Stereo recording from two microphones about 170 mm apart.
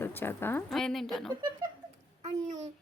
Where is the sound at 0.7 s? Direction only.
Centre (ahead or behind).